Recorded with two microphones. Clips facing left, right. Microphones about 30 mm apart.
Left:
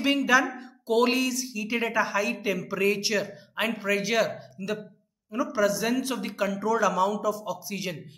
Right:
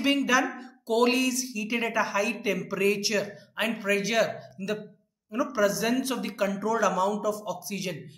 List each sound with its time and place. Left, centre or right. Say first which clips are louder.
0.0 s a woman's voice: left 2 dB; centre